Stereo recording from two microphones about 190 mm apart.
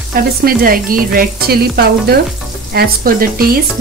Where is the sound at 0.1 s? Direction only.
50° right (ahead or behind).